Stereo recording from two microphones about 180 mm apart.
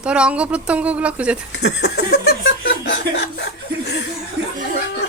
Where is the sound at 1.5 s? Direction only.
65° left (ahead or behind).